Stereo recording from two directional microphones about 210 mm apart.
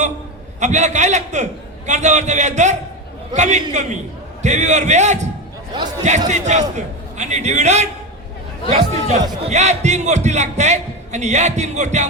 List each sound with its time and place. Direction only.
0.6 s a man's voice: 35° right (ahead or behind)
9.0 s a man's voice: 35° right (ahead or behind)